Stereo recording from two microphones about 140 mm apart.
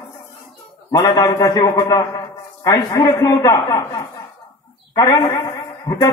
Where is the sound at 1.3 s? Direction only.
25° left (ahead or behind).